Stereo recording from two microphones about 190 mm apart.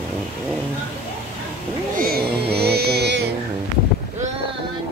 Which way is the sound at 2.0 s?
50° right (ahead or behind).